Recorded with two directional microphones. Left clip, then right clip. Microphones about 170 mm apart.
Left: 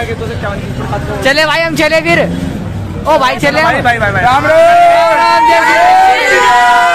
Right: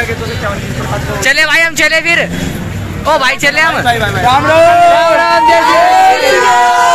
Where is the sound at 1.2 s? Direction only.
20° left (ahead or behind).